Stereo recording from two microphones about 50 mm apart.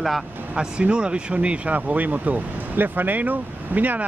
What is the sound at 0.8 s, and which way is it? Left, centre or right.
Speech, centre.